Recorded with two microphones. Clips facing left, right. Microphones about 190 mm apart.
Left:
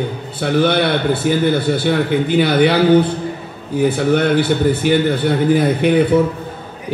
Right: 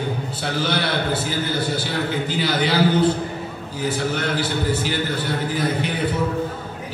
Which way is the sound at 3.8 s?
60° left (ahead or behind).